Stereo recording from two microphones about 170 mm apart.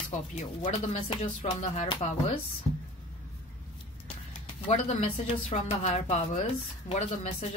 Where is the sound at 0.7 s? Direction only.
35° left (ahead or behind).